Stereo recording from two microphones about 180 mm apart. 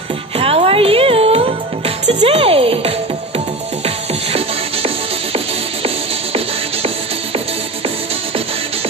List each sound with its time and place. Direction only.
0.4 s music: 30° right (ahead or behind)